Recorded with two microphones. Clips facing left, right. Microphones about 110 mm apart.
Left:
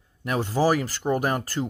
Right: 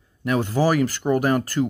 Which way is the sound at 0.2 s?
35° left (ahead or behind).